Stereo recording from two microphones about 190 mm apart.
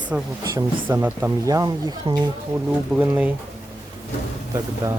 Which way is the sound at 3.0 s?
10° right (ahead or behind).